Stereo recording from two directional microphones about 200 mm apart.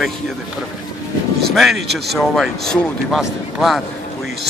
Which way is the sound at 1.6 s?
Centre (ahead or behind).